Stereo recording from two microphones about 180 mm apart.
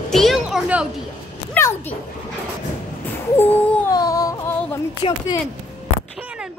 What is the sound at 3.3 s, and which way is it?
Music, 15° left (ahead or behind).